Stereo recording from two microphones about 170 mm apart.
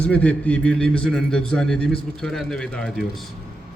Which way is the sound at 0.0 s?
10° left (ahead or behind).